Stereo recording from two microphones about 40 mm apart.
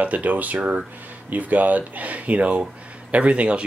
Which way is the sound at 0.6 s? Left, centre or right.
Right.